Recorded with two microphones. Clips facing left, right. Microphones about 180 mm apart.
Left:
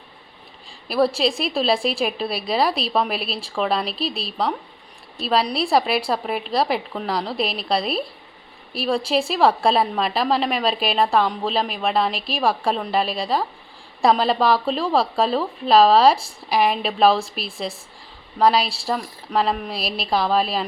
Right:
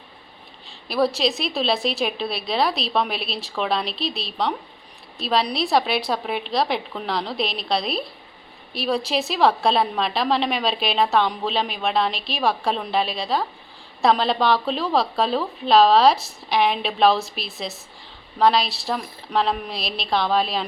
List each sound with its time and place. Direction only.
0.9 s a woman's voice: 5° left (ahead or behind)
9.2 s a woman's voice: 5° left (ahead or behind)